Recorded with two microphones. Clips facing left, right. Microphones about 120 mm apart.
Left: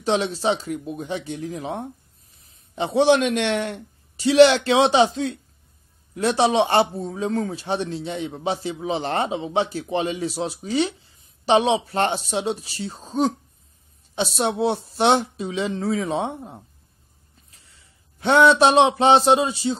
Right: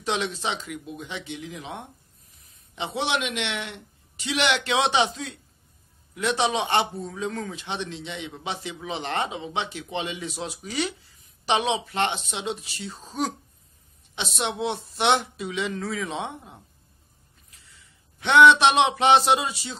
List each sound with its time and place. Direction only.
0.0 s speech: 35° left (ahead or behind)